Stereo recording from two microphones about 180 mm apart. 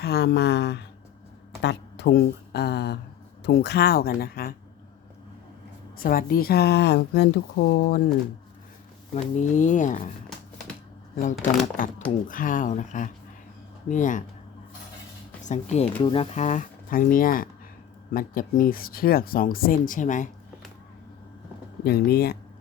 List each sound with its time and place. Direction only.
0.0 s speech: 65° left (ahead or behind)
6.0 s speech: 55° left (ahead or behind)
9.1 s speech: 40° left (ahead or behind)
12.3 s speech: 50° left (ahead or behind)
15.4 s speech: 40° left (ahead or behind)
21.8 s speech: 60° left (ahead or behind)